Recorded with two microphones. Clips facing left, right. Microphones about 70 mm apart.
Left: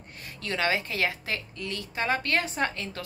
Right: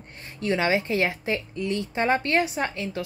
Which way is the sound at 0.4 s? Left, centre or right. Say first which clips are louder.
Right 5 dB; right.